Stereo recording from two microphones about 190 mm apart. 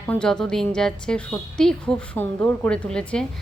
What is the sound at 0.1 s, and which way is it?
A woman's voice, 5° left (ahead or behind).